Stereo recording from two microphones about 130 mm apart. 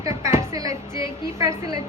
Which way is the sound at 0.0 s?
20° right (ahead or behind).